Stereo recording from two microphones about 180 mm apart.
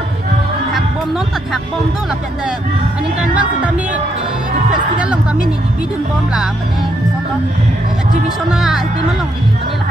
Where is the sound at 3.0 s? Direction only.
5° right (ahead or behind).